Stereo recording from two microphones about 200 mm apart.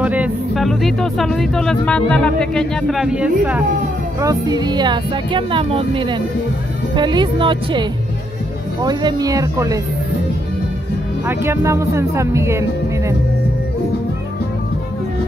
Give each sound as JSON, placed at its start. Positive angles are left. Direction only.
{"t": 0.0, "sound": "speech", "side_deg": -5}
{"t": 4.2, "sound": "speech", "side_deg": -20}
{"t": 11.2, "sound": "speech", "side_deg": -15}